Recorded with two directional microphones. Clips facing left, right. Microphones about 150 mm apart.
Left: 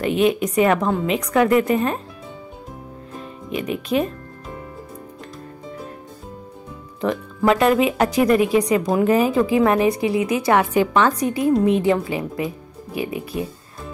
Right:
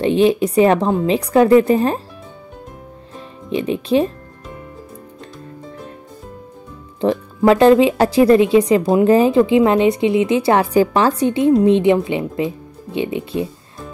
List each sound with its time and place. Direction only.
0.0 s a woman's voice: 30° right (ahead or behind)
3.2 s music: 30° right (ahead or behind)
7.0 s speech: 30° right (ahead or behind)